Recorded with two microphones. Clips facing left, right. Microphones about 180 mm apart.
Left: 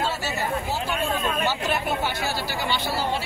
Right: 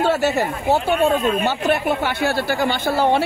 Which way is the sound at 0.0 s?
60° right (ahead or behind).